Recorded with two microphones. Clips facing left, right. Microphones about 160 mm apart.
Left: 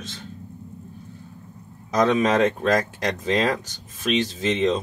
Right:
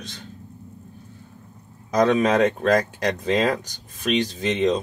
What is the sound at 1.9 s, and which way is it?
Speech, centre (ahead or behind).